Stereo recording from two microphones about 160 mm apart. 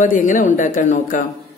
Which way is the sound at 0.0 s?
55° left (ahead or behind).